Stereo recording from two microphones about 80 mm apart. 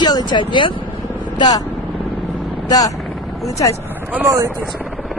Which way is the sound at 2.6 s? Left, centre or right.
Left.